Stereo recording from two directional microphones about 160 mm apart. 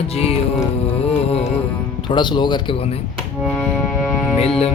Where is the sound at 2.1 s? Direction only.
30° left (ahead or behind).